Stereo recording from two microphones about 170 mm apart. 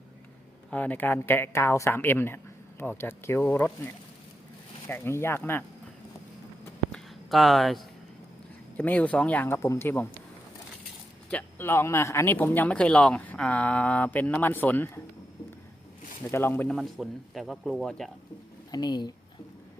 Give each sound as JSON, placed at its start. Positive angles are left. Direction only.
{"t": 0.7, "sound": "speech", "side_deg": 10}
{"t": 6.9, "sound": "a sound", "side_deg": 0}
{"t": 8.8, "sound": "speech", "side_deg": 10}
{"t": 11.3, "sound": "speech", "side_deg": 10}
{"t": 16.2, "sound": "speech", "side_deg": 15}
{"t": 16.7, "sound": "speech", "side_deg": 0}
{"t": 18.7, "sound": "speech", "side_deg": 25}